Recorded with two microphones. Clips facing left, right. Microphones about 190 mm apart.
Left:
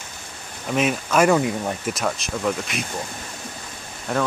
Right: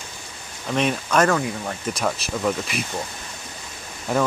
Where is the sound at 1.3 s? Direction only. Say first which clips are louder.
Left 4 dB; 20° left (ahead or behind).